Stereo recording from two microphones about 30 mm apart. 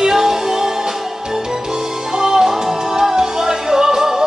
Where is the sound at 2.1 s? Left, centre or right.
Centre.